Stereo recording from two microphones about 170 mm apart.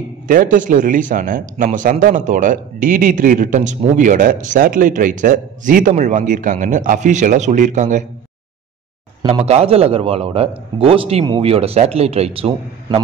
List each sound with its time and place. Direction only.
0.3 s speech: 50° right (ahead or behind)
9.2 s a man's voice: 35° right (ahead or behind)